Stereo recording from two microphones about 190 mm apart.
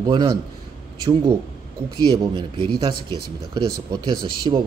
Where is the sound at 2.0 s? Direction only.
25° right (ahead or behind).